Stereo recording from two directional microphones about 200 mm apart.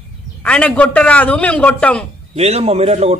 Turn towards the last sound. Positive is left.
turn(degrees=-30)  # may be behind; listen again after turning